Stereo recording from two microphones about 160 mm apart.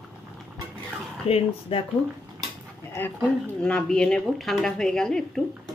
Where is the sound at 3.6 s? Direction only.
5° left (ahead or behind).